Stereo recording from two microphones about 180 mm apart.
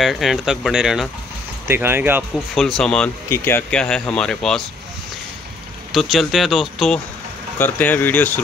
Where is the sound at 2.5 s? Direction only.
Centre (ahead or behind).